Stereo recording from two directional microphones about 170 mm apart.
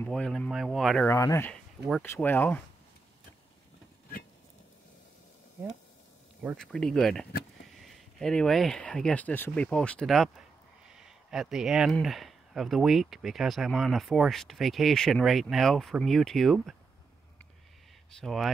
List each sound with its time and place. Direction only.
0.0 s speech: 5° left (ahead or behind)
1.0 s speech: 15° left (ahead or behind)
6.4 s speech: 5° left (ahead or behind)
18.2 s speech: centre (ahead or behind)